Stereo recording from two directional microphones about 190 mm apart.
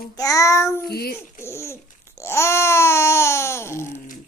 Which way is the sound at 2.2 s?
15° left (ahead or behind).